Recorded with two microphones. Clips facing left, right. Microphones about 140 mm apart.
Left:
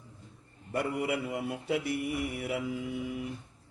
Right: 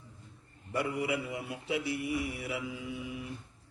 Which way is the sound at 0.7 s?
50° left (ahead or behind).